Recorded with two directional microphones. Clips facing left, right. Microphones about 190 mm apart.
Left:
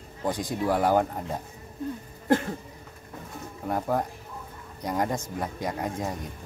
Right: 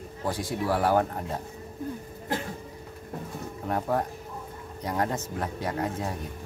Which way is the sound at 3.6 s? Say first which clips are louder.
Left 1 dB; 10° left (ahead or behind).